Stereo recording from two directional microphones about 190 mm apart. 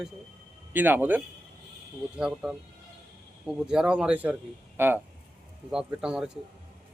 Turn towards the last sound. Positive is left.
turn(degrees=-5)  # may be behind; listen again after turning